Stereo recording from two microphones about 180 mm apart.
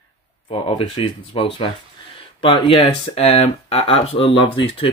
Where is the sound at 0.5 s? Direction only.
30° left (ahead or behind).